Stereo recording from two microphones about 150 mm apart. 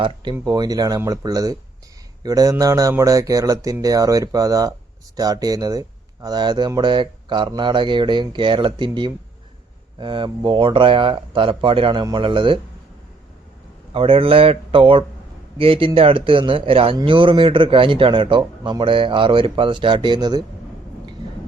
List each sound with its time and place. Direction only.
0.4 s a man's voice: 25° right (ahead or behind)
13.9 s a man's voice: 35° right (ahead or behind)